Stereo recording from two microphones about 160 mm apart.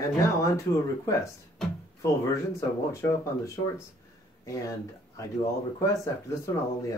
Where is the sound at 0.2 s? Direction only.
20° left (ahead or behind).